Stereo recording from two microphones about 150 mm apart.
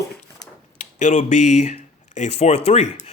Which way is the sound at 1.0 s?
55° left (ahead or behind).